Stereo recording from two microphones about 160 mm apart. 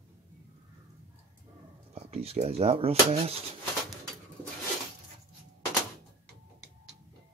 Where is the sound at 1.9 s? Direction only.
40° right (ahead or behind).